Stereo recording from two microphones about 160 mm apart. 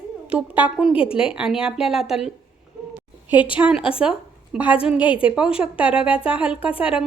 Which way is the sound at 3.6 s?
5° right (ahead or behind).